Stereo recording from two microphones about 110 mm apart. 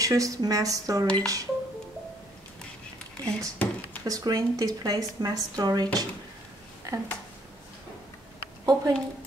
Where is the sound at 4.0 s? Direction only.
35° right (ahead or behind).